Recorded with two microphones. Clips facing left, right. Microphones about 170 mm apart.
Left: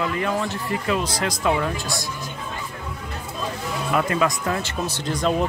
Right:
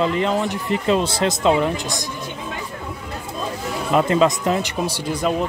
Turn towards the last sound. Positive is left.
turn(degrees=-10)  # may be behind; listen again after turning